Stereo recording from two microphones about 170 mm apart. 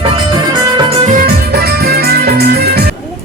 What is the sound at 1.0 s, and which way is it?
Music, 55° right (ahead or behind).